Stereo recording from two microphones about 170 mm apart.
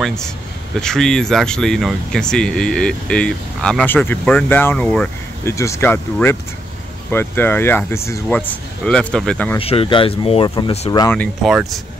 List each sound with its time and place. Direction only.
0.0 s speech: 5° left (ahead or behind)
9.6 s speech: 35° left (ahead or behind)
11.4 s speech: centre (ahead or behind)